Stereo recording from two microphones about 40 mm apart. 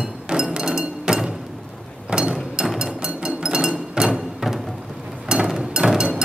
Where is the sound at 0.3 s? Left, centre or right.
Right.